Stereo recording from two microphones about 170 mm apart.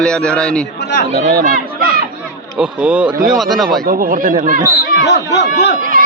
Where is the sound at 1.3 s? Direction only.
50° right (ahead or behind).